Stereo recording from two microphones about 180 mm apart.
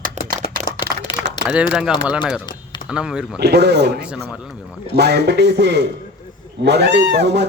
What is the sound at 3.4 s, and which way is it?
Speech, 65° right (ahead or behind).